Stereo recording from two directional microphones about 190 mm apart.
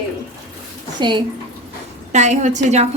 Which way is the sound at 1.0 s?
25° right (ahead or behind).